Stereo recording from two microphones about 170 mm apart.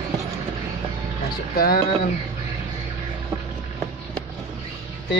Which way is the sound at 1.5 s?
60° left (ahead or behind).